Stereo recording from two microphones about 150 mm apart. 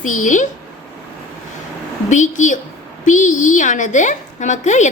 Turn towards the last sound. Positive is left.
turn(degrees=55)  # may be behind; listen again after turning